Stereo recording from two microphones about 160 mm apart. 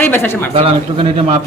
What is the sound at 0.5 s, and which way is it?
Speech, 35° right (ahead or behind).